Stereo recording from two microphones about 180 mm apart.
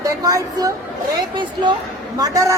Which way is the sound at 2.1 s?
20° right (ahead or behind).